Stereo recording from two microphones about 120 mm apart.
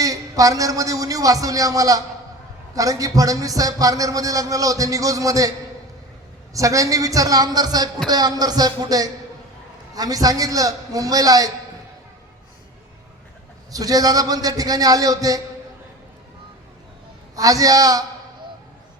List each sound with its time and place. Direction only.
0.0 s a man's voice: 30° right (ahead or behind)
6.5 s a man's voice: 25° right (ahead or behind)
13.7 s a man's voice: 30° right (ahead or behind)
17.3 s a man's voice: 30° right (ahead or behind)